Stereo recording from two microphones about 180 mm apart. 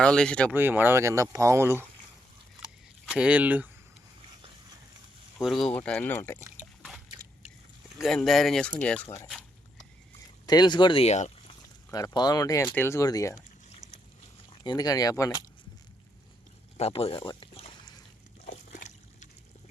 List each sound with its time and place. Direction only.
0.0 s speech: 5° left (ahead or behind)
0.5 s speech: 10° right (ahead or behind)
3.1 s speech: 5° right (ahead or behind)
5.4 s speech: centre (ahead or behind)
7.9 s speech: centre (ahead or behind)
10.4 s speech: 25° left (ahead or behind)
11.9 s speech: 20° left (ahead or behind)
14.6 s speech: 20° left (ahead or behind)
16.7 s a sound: 35° left (ahead or behind)
18.4 s trickle: 45° left (ahead or behind)